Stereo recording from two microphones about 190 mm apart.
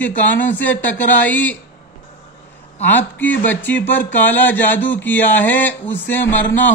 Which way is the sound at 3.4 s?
10° left (ahead or behind).